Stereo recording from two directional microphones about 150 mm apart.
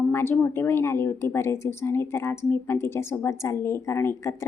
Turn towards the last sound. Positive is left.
turn(degrees=20)  # may be behind; listen again after turning